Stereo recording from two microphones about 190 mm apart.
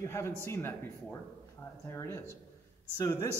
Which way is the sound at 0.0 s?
15° left (ahead or behind).